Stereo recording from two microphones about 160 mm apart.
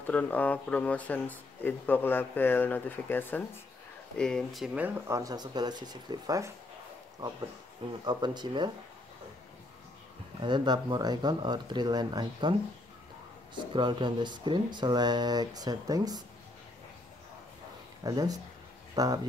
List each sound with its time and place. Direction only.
0.0 s speech: 10° left (ahead or behind); by 6.5 s 20° right (ahead or behind)
8.0 s speech: 25° right (ahead or behind)
10.4 s speech: 30° right (ahead or behind)
13.6 s speech: 30° right (ahead or behind)
18.0 s speech: 25° right (ahead or behind)